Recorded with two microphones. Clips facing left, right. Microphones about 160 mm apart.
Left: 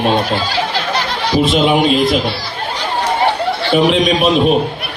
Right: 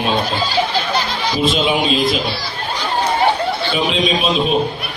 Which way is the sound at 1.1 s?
60° left (ahead or behind).